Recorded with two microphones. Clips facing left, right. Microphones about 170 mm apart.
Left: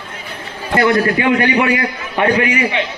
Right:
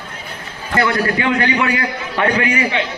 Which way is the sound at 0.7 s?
20° left (ahead or behind).